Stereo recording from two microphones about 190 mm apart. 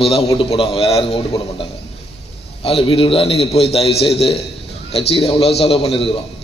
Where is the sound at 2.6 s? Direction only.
30° left (ahead or behind).